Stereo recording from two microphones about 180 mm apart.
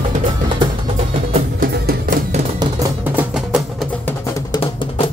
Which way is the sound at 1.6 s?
55° right (ahead or behind).